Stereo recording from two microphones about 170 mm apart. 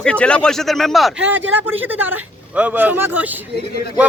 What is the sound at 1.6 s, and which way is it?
Speech, 10° right (ahead or behind).